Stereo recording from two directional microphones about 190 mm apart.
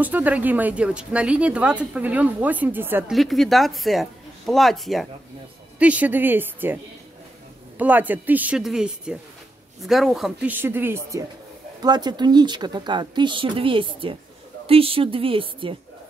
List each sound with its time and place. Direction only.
0.0 s speech: 10° right (ahead or behind)
3.1 s a woman's voice: centre (ahead or behind); by 15.7 s 30° right (ahead or behind)